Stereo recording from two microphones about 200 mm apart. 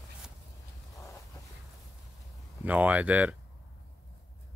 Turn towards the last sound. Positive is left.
turn(degrees=-10)  # may be behind; listen again after turning